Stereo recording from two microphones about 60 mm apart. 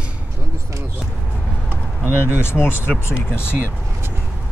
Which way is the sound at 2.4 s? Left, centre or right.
Left.